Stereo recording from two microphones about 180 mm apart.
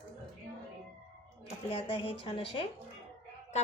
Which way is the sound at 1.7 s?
30° left (ahead or behind).